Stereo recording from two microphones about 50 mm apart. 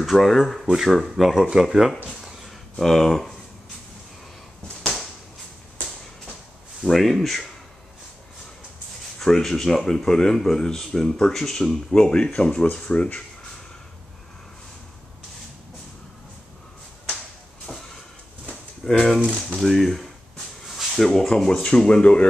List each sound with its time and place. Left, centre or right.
0.0 s speech: centre
2.8 s speech: centre
6.9 s speech: centre
9.2 s speech: centre
17.7 s a sound: centre
18.9 s speech: centre
21.6 s speech: centre